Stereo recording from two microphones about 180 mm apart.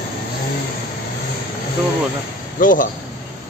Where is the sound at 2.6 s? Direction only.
50° left (ahead or behind).